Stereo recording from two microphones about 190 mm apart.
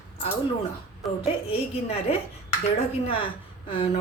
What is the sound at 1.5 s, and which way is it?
Speech, 30° left (ahead or behind).